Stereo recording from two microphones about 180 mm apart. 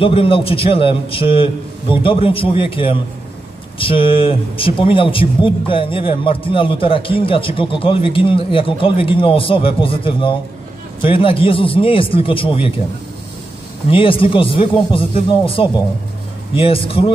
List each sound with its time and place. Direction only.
0.0 s a man's voice: 30° left (ahead or behind)
13.8 s a man's voice: 30° left (ahead or behind)